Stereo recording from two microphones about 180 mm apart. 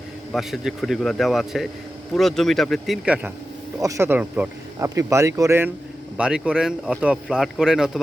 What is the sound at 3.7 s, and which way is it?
Speech, 20° right (ahead or behind).